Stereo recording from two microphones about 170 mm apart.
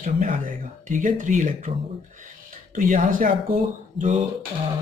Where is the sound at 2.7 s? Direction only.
55° right (ahead or behind).